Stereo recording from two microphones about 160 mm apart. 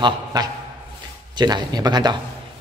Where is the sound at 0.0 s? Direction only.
25° right (ahead or behind).